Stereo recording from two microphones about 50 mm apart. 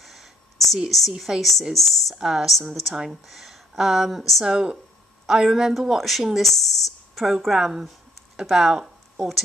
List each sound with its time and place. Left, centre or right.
0.0 s a sound: centre
1.4 s speech: centre
4.5 s speech: centre